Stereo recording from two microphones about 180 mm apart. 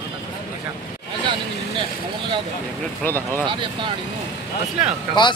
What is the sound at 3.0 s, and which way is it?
Speech, 10° left (ahead or behind).